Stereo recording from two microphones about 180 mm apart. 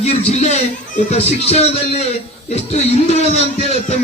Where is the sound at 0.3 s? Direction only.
40° left (ahead or behind).